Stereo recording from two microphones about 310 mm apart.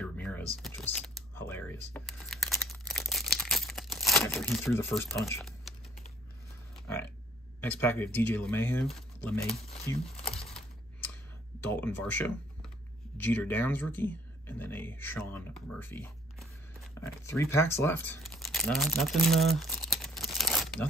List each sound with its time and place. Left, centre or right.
0.0 s typing: centre
0.6 s a sound: centre
7.6 s speech: centre
9.5 s crumpling: centre
11.6 s speech: centre